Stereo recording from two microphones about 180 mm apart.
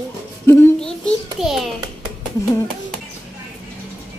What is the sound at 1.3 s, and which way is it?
Speech, centre (ahead or behind).